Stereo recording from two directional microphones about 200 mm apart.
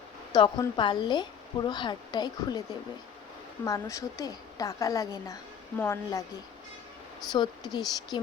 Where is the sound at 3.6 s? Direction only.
15° left (ahead or behind).